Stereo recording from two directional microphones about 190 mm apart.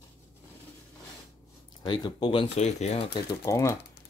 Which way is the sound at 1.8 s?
25° left (ahead or behind).